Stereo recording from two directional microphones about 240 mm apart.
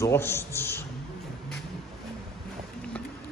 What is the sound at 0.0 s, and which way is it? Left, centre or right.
Speech, centre.